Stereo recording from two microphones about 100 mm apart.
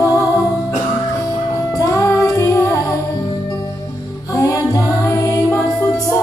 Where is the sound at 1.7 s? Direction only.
35° left (ahead or behind).